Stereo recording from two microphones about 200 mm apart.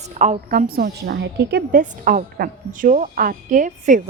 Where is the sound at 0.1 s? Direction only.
35° right (ahead or behind); by 1.8 s 55° right (ahead or behind).